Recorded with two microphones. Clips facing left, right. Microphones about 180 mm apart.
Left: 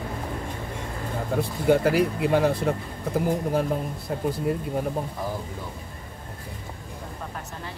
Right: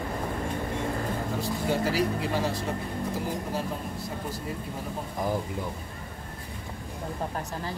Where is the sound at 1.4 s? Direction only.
55° left (ahead or behind).